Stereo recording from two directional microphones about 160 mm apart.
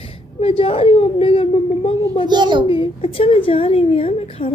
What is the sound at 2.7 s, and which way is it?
A woman's voice, 35° left (ahead or behind).